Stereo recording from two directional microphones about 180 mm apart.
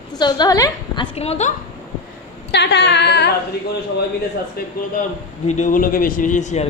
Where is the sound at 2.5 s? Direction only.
70° left (ahead or behind).